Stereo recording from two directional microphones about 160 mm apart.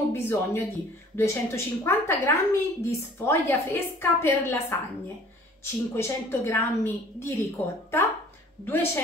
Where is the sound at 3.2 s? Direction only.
15° left (ahead or behind).